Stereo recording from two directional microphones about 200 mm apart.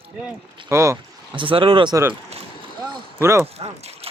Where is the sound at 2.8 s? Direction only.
15° right (ahead or behind).